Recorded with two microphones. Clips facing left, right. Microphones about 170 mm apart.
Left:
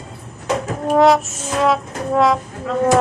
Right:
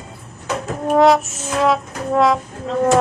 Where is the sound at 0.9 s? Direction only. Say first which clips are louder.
Even; centre (ahead or behind).